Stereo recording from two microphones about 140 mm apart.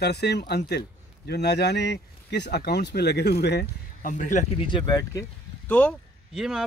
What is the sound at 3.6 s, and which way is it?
Speech, 65° left (ahead or behind).